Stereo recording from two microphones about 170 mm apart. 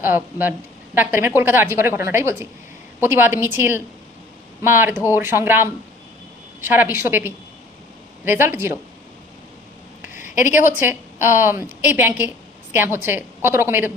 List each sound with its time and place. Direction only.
0.0 s a woman's voice: 10° right (ahead or behind)
10.4 s a woman's voice: 10° right (ahead or behind)